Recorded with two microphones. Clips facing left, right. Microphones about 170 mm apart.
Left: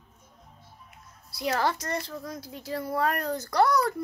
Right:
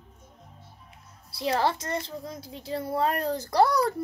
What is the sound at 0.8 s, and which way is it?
A child's voice, 30° right (ahead or behind).